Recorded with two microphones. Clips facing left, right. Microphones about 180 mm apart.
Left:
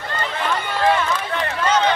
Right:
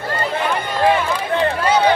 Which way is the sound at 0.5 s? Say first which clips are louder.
Right 1 dB; 15° right (ahead or behind).